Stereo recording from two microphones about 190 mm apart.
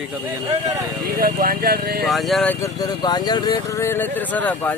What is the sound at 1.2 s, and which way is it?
Speech, 50° right (ahead or behind).